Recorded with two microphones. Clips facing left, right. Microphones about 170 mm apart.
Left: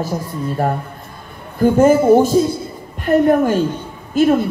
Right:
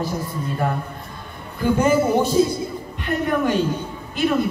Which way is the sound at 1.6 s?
45° left (ahead or behind).